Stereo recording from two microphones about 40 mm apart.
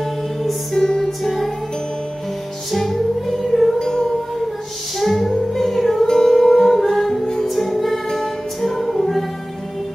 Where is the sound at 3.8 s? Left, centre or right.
Centre.